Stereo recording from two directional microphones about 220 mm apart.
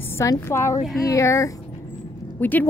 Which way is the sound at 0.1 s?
10° left (ahead or behind).